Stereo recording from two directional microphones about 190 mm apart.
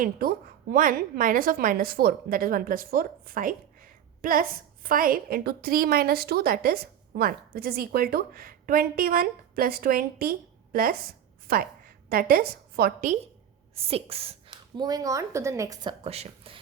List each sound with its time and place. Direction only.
0.0 s a woman's voice: 50° right (ahead or behind)
13.7 s speech: 30° right (ahead or behind)
14.8 s a woman's voice: 20° right (ahead or behind)